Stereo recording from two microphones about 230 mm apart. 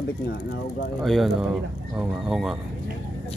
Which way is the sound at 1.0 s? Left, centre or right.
Centre.